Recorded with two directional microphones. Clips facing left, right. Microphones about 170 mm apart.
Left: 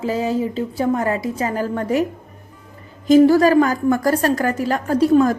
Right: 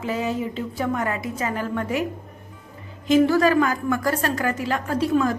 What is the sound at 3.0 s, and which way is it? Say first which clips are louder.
A woman's voice: left 6 dB; 40° left (ahead or behind).